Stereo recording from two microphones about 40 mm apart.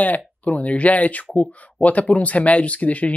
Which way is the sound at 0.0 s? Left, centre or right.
Left.